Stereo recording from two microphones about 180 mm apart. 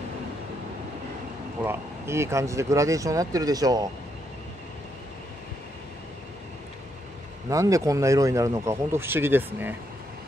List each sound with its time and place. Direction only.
1.6 s speech: 15° right (ahead or behind)
7.4 s speech: 20° right (ahead or behind)